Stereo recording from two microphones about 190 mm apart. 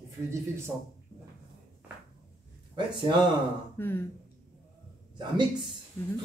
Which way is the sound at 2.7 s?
25° right (ahead or behind).